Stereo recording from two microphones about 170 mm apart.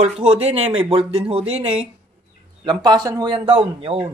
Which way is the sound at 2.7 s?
25° right (ahead or behind).